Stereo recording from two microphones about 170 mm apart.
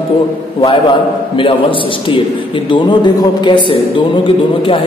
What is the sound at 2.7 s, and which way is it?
A man's voice, 25° left (ahead or behind).